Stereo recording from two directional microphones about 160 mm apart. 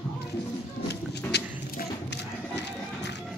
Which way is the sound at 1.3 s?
90° left.